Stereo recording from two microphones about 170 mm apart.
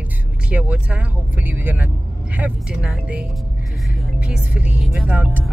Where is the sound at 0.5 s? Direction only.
10° right (ahead or behind).